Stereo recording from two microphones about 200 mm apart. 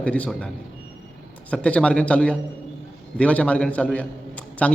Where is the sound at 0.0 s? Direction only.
5° left (ahead or behind).